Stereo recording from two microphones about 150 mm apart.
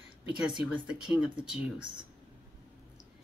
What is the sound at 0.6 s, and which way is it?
Speech, 10° right (ahead or behind).